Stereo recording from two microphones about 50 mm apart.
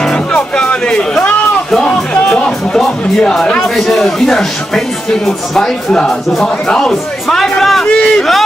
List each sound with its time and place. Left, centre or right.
0.0 s music: centre
3.2 s a man's voice: centre
7.8 s a sound: centre